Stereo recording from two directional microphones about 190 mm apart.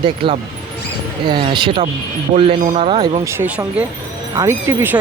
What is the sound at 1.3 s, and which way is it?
Speech, 25° right (ahead or behind).